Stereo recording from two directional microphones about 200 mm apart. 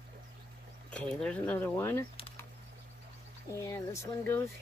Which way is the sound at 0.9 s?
5° left (ahead or behind).